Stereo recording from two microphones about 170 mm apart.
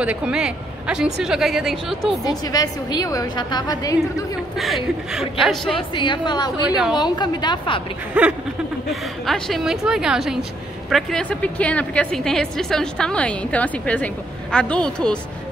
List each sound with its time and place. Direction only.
0.0 s a woman's voice: 5° right (ahead or behind)
2.2 s a woman's voice: 20° left (ahead or behind)
4.6 s a woman's voice: centre (ahead or behind)
5.8 s a woman's voice: 30° left (ahead or behind)
8.1 s a woman's voice: 5° right (ahead or behind)